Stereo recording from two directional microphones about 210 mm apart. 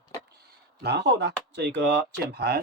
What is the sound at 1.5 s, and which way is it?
Speech, 55° right (ahead or behind).